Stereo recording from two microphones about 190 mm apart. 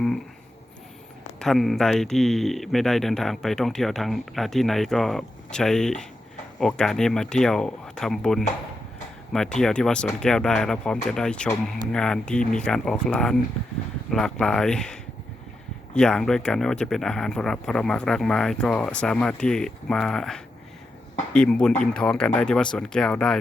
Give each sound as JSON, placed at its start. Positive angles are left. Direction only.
{"t": 1.4, "sound": "speech", "side_deg": 0}
{"t": 16.0, "sound": "speech", "side_deg": 5}